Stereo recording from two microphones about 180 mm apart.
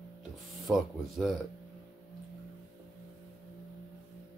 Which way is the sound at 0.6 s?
Centre (ahead or behind).